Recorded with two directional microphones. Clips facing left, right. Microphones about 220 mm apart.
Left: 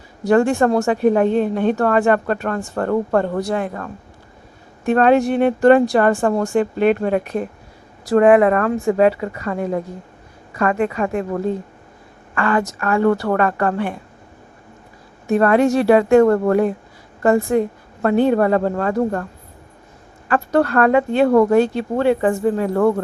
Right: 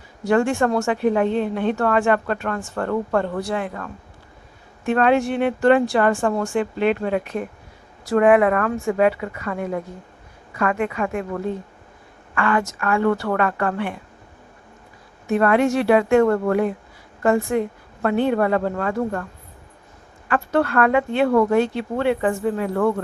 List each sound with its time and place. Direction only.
0.3 s speech: 40° left (ahead or behind)
4.9 s speech: 40° left (ahead or behind)
8.0 s speech: 35° left (ahead or behind)
15.3 s speech: 40° left (ahead or behind)